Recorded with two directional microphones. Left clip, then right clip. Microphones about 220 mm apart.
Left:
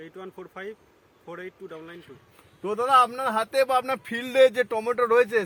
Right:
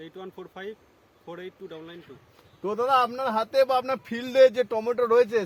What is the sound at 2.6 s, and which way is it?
A man's voice, 15° left (ahead or behind).